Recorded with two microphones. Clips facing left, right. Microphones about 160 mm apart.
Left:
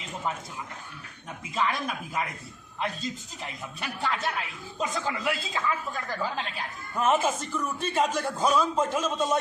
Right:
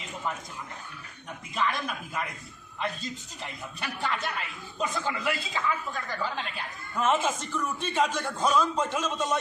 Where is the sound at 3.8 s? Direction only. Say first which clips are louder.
Left 2 dB; centre (ahead or behind).